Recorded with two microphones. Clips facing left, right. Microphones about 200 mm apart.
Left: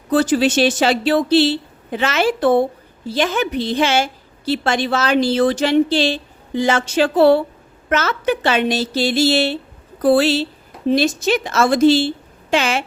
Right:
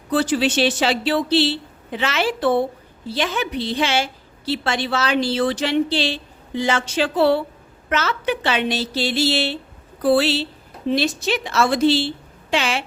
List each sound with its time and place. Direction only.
0.1 s a woman's voice: 45° left (ahead or behind)